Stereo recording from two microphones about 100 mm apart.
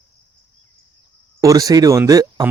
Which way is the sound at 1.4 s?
35° right (ahead or behind).